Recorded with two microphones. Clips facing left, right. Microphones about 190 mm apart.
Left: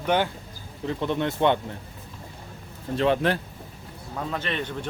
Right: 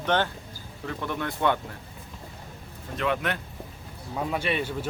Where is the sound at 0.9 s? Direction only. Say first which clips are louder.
Left 5 dB; 25° left (ahead or behind).